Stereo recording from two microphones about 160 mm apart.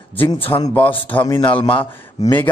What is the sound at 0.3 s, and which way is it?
Speech, 30° left (ahead or behind).